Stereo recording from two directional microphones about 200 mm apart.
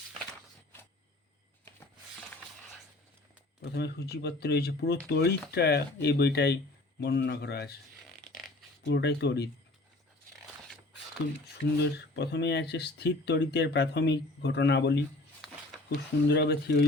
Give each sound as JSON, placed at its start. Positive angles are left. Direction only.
{"t": 3.6, "sound": "a man's voice", "side_deg": 55}
{"t": 8.8, "sound": "speech", "side_deg": 55}
{"t": 11.8, "sound": "speech", "side_deg": 55}
{"t": 16.2, "sound": "speech", "side_deg": 55}